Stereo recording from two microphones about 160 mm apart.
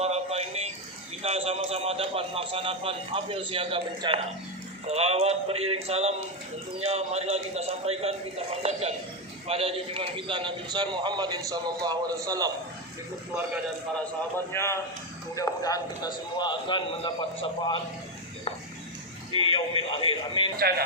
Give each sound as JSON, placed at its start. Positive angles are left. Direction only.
{"t": 0.0, "sound": "a sound", "side_deg": -40}
{"t": 1.2, "sound": "a man's voice", "side_deg": -40}
{"t": 9.5, "sound": "a man's voice", "side_deg": -35}
{"t": 14.3, "sound": "a man's voice", "side_deg": 15}
{"t": 19.5, "sound": "speech", "side_deg": 35}
{"t": 20.6, "sound": "speech", "side_deg": -75}